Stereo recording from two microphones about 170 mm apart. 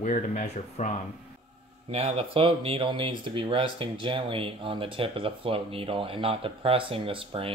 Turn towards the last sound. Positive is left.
turn(degrees=-30)  # may be behind; listen again after turning